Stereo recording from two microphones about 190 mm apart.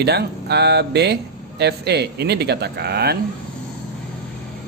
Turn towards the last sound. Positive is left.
turn(degrees=-60)  # may be behind; listen again after turning